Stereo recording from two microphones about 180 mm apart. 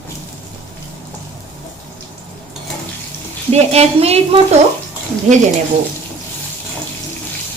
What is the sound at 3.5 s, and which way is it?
Speech, 35° right (ahead or behind).